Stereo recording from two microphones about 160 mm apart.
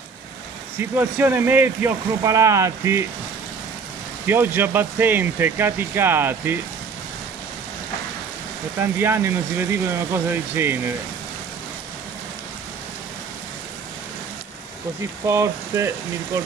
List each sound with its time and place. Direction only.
0.7 s speech: 10° right (ahead or behind)
4.3 s speech: 15° right (ahead or behind)
8.7 s speech: 15° right (ahead or behind)
15.0 s speech: 15° right (ahead or behind)